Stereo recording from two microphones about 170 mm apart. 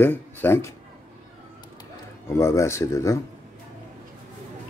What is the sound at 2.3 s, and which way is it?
Speech, 15° left (ahead or behind).